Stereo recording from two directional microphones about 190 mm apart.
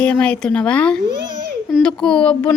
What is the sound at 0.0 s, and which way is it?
Speech, 5° left (ahead or behind).